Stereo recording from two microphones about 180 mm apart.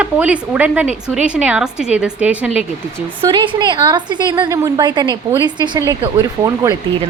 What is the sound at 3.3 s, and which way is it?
A woman's voice, 25° right (ahead or behind).